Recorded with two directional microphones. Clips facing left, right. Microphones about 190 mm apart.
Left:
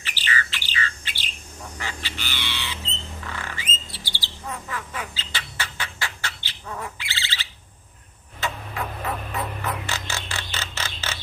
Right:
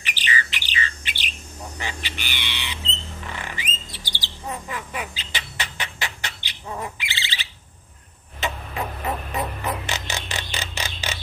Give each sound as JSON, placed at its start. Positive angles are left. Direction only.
{"t": 0.0, "sound": "bird", "side_deg": -15}
{"t": 8.4, "sound": "music", "side_deg": -20}